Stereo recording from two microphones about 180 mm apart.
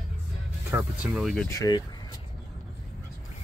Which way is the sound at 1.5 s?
20° left (ahead or behind).